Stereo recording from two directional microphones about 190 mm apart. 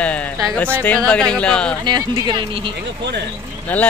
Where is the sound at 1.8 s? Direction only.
20° right (ahead or behind).